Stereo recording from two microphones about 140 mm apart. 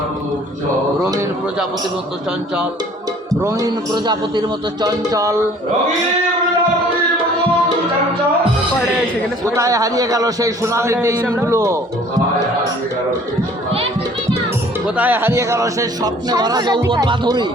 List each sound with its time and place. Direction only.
3.4 s speech: 30° right (ahead or behind)
9.6 s speech: 25° right (ahead or behind)
14.8 s speech: 10° right (ahead or behind); by 17.4 s 30° right (ahead or behind)